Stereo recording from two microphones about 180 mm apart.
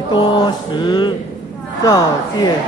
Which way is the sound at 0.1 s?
25° left (ahead or behind).